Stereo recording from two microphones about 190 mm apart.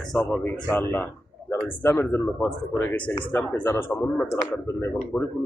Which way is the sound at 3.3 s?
10° left (ahead or behind).